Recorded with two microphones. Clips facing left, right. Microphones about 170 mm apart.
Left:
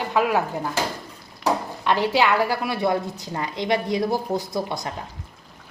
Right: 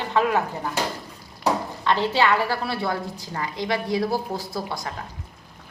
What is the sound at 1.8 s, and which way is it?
A woman's voice, 15° left (ahead or behind).